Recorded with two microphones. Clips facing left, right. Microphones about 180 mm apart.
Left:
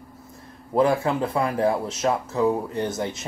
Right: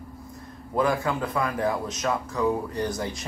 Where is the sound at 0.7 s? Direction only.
25° left (ahead or behind).